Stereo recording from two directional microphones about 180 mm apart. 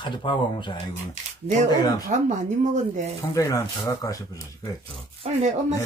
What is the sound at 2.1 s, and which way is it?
Speech, 45° right (ahead or behind).